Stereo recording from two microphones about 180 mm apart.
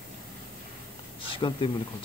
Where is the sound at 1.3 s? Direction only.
25° left (ahead or behind).